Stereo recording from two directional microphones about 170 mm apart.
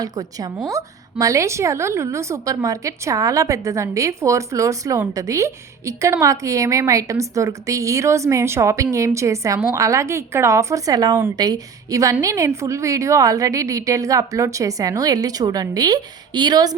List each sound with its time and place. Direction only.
0.0 s a woman's voice: 20° right (ahead or behind)